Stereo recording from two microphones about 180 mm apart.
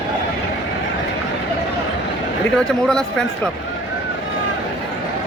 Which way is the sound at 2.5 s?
5° left (ahead or behind).